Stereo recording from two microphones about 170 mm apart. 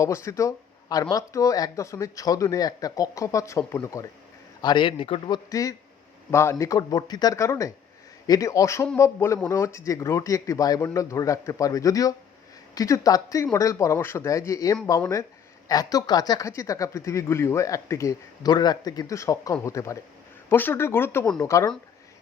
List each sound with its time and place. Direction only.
0.0 s speech: 15° left (ahead or behind)
4.6 s speech: 30° left (ahead or behind)